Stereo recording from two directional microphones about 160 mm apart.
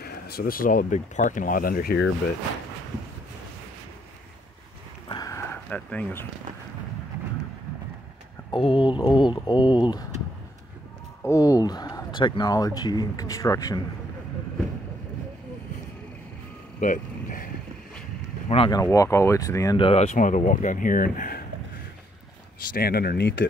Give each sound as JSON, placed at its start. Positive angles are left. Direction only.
{"t": 0.0, "sound": "speech", "side_deg": 70}
{"t": 5.0, "sound": "a sound", "side_deg": 25}
{"t": 8.5, "sound": "speech", "side_deg": 30}
{"t": 11.2, "sound": "speech", "side_deg": 20}
{"t": 16.8, "sound": "vehicle", "side_deg": 60}
{"t": 18.7, "sound": "speech", "side_deg": 20}
{"t": 19.8, "sound": "speech", "side_deg": 40}
{"t": 22.7, "sound": "speech", "side_deg": 70}